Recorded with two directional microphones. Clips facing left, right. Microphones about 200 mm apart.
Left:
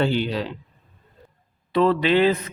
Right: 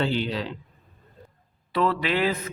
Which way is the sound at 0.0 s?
55° left (ahead or behind).